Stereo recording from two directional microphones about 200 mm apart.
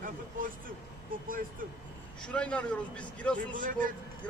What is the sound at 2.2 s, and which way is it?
Speech, 5° left (ahead or behind).